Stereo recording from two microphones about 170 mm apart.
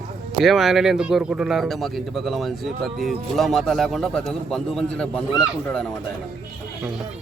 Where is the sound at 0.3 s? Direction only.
Centre (ahead or behind).